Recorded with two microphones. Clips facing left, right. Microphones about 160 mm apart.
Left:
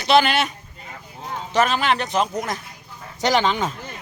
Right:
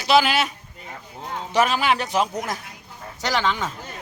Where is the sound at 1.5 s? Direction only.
10° right (ahead or behind).